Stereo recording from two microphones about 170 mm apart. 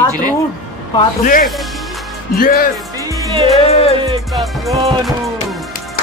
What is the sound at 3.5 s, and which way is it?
Music, 35° left (ahead or behind).